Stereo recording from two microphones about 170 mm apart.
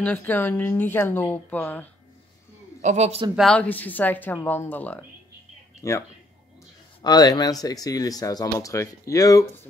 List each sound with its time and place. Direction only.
0.0 s speech: 10° left (ahead or behind)
2.8 s a man's voice: 40° right (ahead or behind)
3.3 s speech: 5° left (ahead or behind)